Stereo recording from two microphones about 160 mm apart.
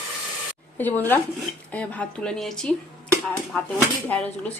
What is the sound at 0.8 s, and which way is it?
A woman's voice, 10° left (ahead or behind).